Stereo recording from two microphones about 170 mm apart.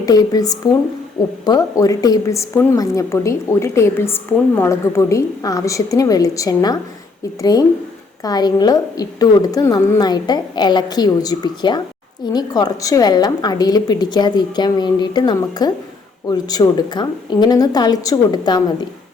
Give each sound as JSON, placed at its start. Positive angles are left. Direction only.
{"t": 0.0, "sound": "a woman's voice", "side_deg": 20}
{"t": 8.2, "sound": "a woman's voice", "side_deg": 25}